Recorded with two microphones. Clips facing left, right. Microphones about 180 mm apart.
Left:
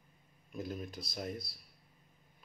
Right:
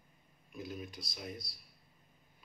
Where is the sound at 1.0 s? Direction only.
50° left (ahead or behind).